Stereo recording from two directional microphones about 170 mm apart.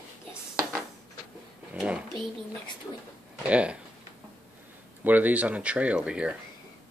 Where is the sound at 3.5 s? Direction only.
5° right (ahead or behind).